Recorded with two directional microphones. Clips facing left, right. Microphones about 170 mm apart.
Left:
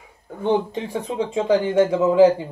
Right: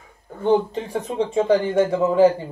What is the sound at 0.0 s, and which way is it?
A man's voice, 10° left (ahead or behind).